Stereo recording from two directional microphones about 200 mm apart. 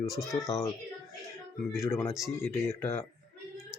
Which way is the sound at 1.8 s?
15° left (ahead or behind).